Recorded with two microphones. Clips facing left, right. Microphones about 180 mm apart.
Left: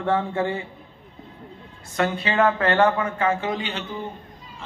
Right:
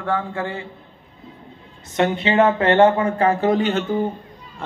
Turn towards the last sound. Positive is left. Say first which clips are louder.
# right 10 dB
turn(degrees=-45)  # may be behind; listen again after turning